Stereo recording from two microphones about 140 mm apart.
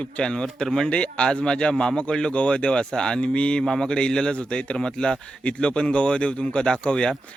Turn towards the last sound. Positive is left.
turn(degrees=5)  # may be behind; listen again after turning